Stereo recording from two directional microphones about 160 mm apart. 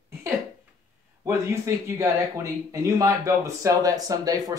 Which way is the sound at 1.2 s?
15° right (ahead or behind).